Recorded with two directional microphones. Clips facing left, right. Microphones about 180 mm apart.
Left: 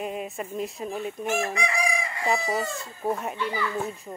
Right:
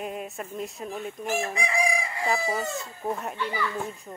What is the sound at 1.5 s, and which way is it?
Chicken, 30° right (ahead or behind).